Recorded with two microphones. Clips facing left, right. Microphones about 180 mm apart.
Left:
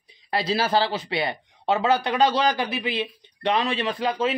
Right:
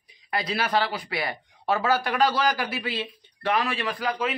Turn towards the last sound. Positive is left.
turn(degrees=25)  # may be behind; listen again after turning